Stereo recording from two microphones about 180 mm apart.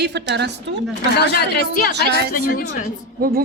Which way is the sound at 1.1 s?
65° left (ahead or behind).